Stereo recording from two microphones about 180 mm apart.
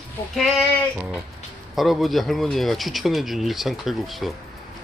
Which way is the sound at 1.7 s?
Centre (ahead or behind).